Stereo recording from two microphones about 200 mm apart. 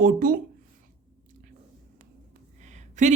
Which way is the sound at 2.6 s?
35° right (ahead or behind).